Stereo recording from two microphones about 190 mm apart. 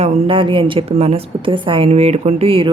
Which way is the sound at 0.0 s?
35° right (ahead or behind).